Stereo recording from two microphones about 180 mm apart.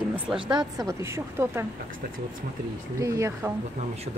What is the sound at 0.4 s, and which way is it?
Speech, 25° right (ahead or behind).